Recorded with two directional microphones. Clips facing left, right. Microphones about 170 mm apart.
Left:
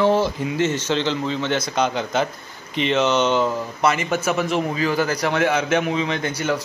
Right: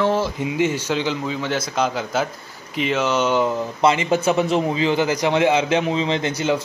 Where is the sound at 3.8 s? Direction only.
20° right (ahead or behind).